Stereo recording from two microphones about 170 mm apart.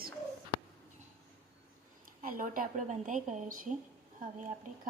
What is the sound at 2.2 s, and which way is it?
Speech, 55° right (ahead or behind).